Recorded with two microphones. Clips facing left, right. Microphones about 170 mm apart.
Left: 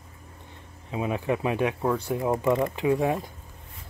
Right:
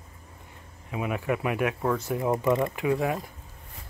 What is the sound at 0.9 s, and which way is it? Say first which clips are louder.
Speech: left 2 dB; 25° left (ahead or behind).